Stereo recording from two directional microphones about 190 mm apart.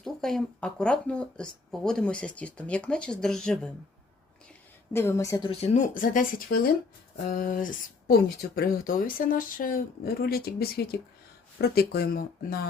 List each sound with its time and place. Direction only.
0.0 s speech: 5° left (ahead or behind)
4.9 s a woman's voice: 15° left (ahead or behind)
5.5 s speech: 35° left (ahead or behind); by 12.6 s 55° left (ahead or behind)